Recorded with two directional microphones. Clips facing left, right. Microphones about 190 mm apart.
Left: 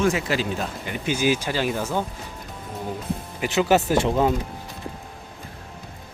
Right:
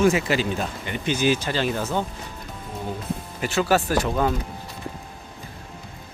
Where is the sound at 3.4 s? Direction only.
15° left (ahead or behind).